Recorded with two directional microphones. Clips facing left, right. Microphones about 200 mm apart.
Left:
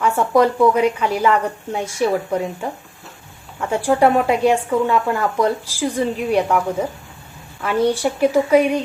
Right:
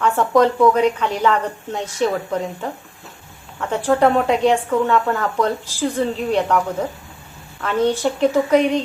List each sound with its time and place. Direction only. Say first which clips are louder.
0.0 s speech: even; 10° left (ahead or behind)